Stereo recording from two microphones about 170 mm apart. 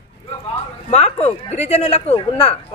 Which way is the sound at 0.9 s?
40° left (ahead or behind).